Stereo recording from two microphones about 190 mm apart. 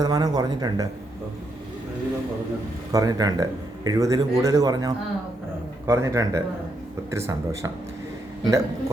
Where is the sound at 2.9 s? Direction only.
20° right (ahead or behind).